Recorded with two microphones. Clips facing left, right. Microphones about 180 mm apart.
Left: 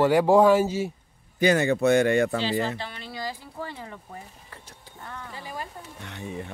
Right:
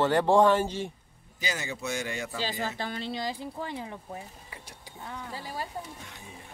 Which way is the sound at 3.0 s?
20° right (ahead or behind).